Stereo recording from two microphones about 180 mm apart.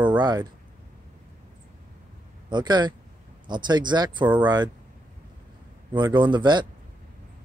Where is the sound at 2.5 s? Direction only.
25° right (ahead or behind).